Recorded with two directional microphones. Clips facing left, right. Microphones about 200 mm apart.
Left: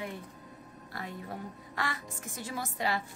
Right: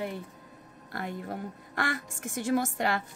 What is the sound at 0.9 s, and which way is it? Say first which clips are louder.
A woman's voice: right 5 dB; 55° right (ahead or behind).